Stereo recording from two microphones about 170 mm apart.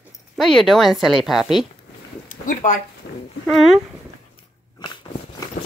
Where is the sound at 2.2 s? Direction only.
50° left (ahead or behind).